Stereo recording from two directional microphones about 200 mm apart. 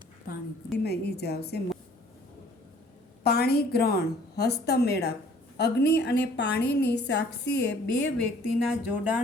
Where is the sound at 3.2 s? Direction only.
50° left (ahead or behind).